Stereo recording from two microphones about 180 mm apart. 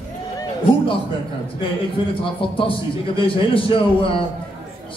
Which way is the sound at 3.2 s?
30° left (ahead or behind).